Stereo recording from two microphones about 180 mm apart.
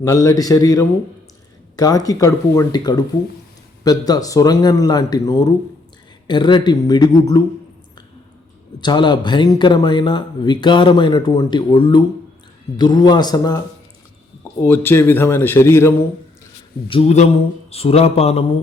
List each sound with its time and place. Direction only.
0.0 s speech: 15° left (ahead or behind)
8.8 s speech: 25° left (ahead or behind)
14.4 s a man's voice: 10° left (ahead or behind)
16.9 s speech: 35° left (ahead or behind)